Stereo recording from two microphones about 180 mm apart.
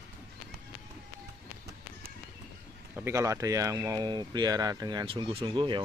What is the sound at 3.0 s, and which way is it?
Speech, 15° right (ahead or behind).